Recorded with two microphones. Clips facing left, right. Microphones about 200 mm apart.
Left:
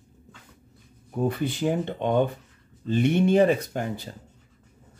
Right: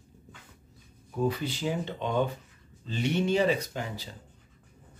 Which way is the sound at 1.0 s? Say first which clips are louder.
Left 3 dB; 55° left (ahead or behind).